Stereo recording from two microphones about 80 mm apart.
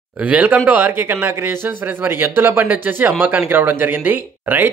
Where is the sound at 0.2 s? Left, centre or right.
Right.